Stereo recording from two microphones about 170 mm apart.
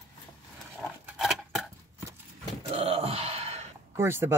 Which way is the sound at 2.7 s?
35° right (ahead or behind).